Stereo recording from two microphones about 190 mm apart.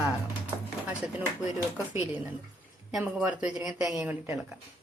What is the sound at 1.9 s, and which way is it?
A woman's voice, 10° right (ahead or behind).